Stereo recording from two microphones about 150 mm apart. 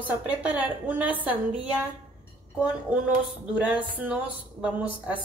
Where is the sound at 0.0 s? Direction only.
10° right (ahead or behind).